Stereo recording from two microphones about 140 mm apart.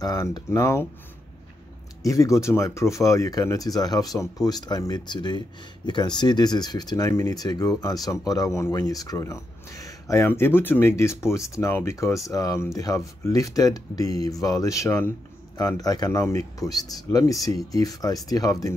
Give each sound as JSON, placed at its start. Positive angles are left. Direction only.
{"t": 0.0, "sound": "speech", "side_deg": 25}
{"t": 2.0, "sound": "speech", "side_deg": 25}